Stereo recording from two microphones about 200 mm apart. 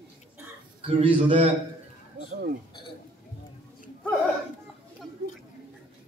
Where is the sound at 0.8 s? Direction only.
30° right (ahead or behind).